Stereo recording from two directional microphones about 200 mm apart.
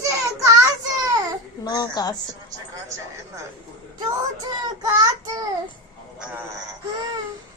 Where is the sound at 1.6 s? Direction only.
20° left (ahead or behind).